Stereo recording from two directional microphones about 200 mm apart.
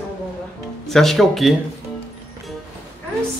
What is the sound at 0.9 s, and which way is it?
Speech, centre (ahead or behind).